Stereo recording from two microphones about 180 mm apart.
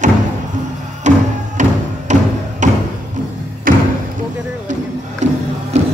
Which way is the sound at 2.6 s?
40° right (ahead or behind).